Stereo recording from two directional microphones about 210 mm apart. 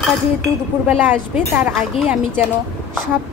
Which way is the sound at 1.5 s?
5° right (ahead or behind).